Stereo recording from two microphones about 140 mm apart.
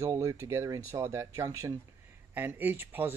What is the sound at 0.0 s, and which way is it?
Speech, 25° right (ahead or behind).